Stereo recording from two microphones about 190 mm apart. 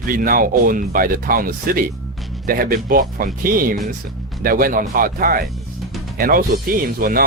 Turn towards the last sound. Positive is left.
turn(degrees=-50)  # may be behind; listen again after turning